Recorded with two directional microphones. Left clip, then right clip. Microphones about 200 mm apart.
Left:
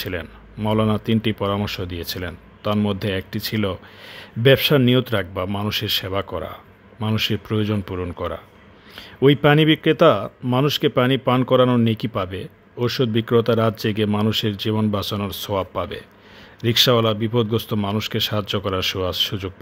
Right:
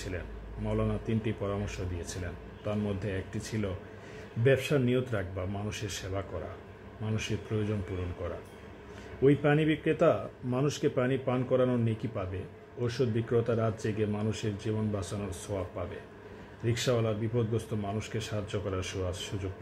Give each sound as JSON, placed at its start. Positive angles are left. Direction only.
{"t": 0.7, "sound": "speech", "side_deg": 50}
{"t": 10.5, "sound": "speech", "side_deg": 35}
{"t": 15.0, "sound": "speech", "side_deg": 35}
{"t": 15.4, "sound": "speech", "side_deg": 50}